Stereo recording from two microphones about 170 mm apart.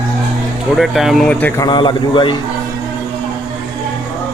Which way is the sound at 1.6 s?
25° left (ahead or behind).